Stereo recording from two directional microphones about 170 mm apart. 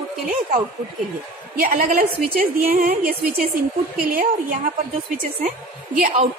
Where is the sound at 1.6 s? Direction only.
55° right (ahead or behind).